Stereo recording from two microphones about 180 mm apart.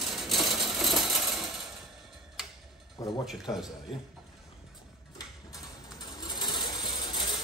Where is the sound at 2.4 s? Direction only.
5° right (ahead or behind).